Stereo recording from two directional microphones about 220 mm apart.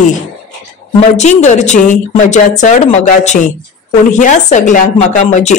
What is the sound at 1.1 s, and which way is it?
A woman's voice, 30° left (ahead or behind).